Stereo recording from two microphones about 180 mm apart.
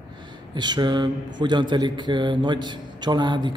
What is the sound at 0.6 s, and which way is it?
Speech, 25° right (ahead or behind).